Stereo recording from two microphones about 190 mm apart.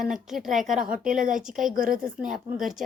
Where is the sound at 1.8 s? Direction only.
45° right (ahead or behind).